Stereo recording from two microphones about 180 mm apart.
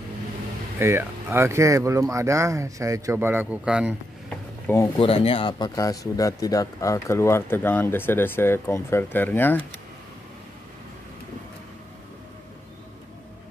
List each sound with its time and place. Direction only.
0.7 s speech: 15° right (ahead or behind)
4.9 s speech: 30° left (ahead or behind); by 9.8 s 10° left (ahead or behind)